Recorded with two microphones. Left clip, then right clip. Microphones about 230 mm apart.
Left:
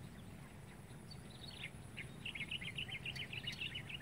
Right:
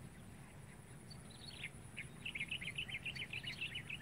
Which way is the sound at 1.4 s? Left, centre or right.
Right.